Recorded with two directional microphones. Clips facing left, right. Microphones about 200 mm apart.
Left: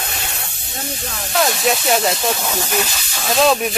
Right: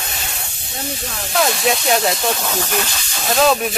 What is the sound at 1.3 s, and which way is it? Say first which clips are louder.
Speech: even; centre (ahead or behind).